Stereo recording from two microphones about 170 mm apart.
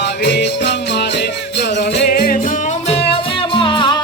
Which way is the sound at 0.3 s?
80° left.